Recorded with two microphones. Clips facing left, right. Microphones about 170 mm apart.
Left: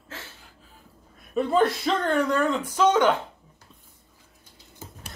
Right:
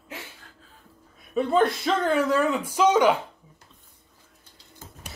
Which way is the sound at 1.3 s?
Centre (ahead or behind).